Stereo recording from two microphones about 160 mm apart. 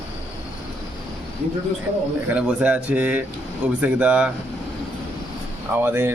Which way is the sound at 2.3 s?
5° right (ahead or behind).